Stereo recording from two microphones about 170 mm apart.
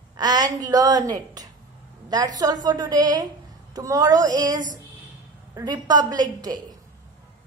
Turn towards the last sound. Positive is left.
turn(degrees=-25)  # may be behind; listen again after turning